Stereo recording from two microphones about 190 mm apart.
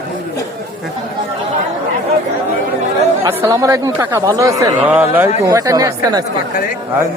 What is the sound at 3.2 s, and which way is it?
Speech, 15° right (ahead or behind).